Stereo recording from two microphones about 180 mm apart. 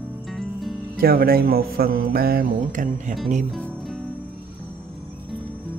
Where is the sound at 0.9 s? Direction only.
55° right (ahead or behind).